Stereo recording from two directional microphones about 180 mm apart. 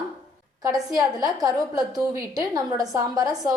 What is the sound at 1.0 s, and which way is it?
A woman's voice, 20° right (ahead or behind).